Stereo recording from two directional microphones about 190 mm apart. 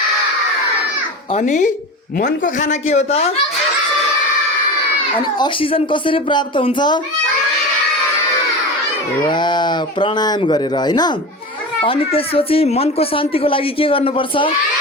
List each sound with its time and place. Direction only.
1.3 s speech: 40° left (ahead or behind)
5.4 s speech: 25° left (ahead or behind)
9.2 s speech: 25° left (ahead or behind)